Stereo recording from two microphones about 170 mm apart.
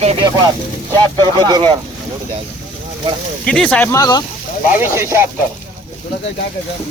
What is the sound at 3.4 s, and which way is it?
Speech, 5° left (ahead or behind).